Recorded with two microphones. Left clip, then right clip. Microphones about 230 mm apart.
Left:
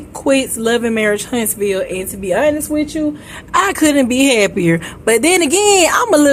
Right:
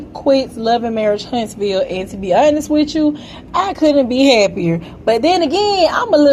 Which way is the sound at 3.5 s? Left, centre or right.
Left.